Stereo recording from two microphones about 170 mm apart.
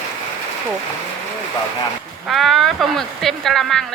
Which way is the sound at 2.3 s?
Centre (ahead or behind).